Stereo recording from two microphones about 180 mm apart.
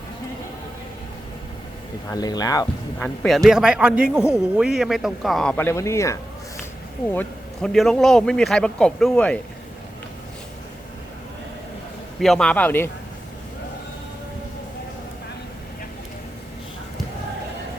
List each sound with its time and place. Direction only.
2.0 s speech: 20° left (ahead or behind)
3.0 s speech: centre (ahead or behind)
12.2 s a man's voice: 5° left (ahead or behind)